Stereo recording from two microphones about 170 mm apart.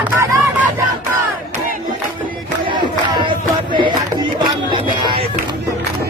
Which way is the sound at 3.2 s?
30° right (ahead or behind).